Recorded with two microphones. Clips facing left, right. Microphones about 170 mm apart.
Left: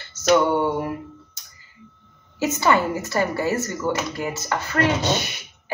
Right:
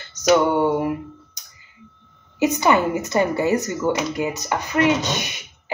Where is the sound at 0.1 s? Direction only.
15° right (ahead or behind).